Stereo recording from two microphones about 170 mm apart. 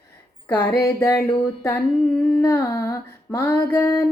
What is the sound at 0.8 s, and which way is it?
Female singing, 15° left (ahead or behind).